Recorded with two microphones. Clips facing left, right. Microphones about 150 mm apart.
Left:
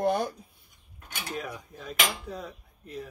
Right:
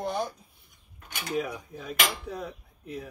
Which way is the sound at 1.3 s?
5° right (ahead or behind).